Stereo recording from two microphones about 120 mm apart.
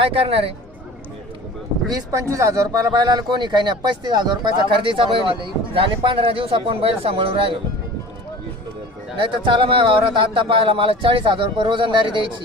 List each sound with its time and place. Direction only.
0.0 s speech: 55° right (ahead or behind)
1.9 s speech: 25° right (ahead or behind); by 7.6 s 50° right (ahead or behind)
9.1 s speech: 45° right (ahead or behind)